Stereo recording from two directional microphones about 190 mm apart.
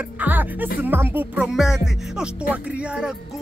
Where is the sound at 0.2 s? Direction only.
10° right (ahead or behind).